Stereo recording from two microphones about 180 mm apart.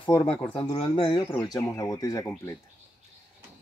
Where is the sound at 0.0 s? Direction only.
25° left (ahead or behind).